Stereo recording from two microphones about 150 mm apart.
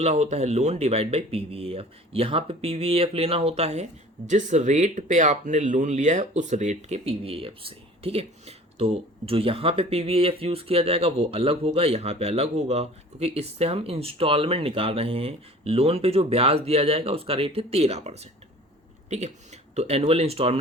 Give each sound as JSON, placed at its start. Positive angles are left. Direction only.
{"t": 0.0, "sound": "speech", "side_deg": -45}